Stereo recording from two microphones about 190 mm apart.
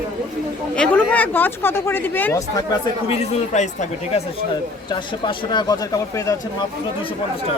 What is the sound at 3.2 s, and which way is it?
Speech, 35° left (ahead or behind).